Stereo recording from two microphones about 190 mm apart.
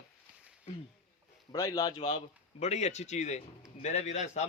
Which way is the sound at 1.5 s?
20° left (ahead or behind).